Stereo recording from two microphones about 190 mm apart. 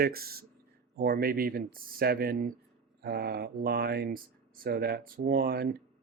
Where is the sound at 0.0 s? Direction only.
50° right (ahead or behind).